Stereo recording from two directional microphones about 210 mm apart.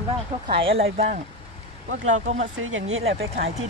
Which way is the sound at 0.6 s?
25° right (ahead or behind).